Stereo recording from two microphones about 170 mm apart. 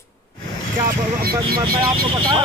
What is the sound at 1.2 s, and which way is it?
Speech, 60° right (ahead or behind).